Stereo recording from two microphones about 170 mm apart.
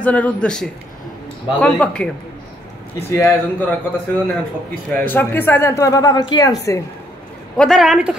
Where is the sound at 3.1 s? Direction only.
15° left (ahead or behind).